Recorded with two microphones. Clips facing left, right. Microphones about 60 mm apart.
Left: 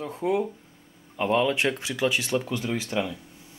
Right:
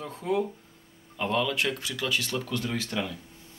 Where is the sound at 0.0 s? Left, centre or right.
Centre.